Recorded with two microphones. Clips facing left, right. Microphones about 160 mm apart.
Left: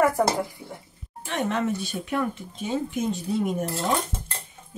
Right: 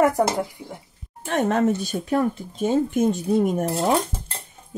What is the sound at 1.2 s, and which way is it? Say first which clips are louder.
Speech: right 6 dB; 45° right (ahead or behind).